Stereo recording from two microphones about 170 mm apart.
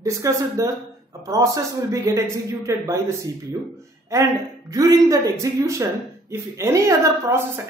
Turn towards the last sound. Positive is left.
turn(degrees=-15)  # may be behind; listen again after turning